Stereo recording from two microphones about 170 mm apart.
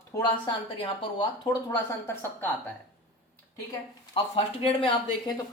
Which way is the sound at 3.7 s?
30° left (ahead or behind).